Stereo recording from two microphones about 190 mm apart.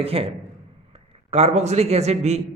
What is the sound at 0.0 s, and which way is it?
A man's voice, 30° right (ahead or behind).